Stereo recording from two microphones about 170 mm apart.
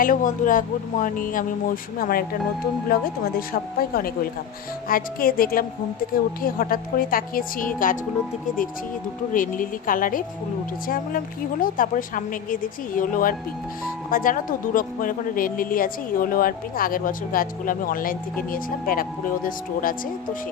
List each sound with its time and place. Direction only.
0.0 s speech: 50° left (ahead or behind)
9.3 s speech: 50° left (ahead or behind)